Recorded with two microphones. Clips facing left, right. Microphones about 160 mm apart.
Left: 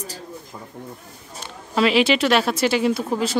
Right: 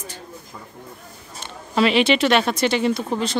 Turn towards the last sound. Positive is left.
turn(degrees=5)  # may be behind; listen again after turning